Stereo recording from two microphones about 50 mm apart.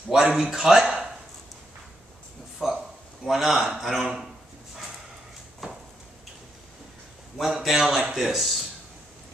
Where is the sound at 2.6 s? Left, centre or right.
Centre.